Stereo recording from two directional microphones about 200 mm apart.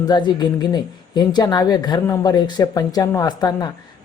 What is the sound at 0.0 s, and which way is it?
Speech, 20° left (ahead or behind).